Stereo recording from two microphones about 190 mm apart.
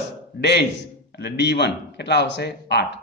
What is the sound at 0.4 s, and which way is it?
A man's voice, 65° left (ahead or behind).